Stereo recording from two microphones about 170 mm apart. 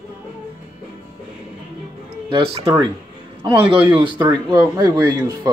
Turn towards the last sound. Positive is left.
turn(degrees=-25)  # may be behind; listen again after turning